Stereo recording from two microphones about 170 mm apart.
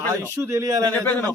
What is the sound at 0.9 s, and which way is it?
Speech, 10° left (ahead or behind).